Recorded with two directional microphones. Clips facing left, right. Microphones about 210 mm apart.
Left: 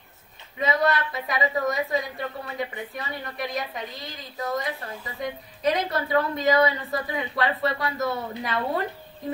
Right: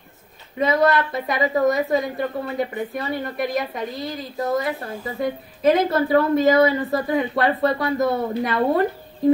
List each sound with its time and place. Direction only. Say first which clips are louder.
0.6 s a woman's voice: right 5 dB; 45° right (ahead or behind)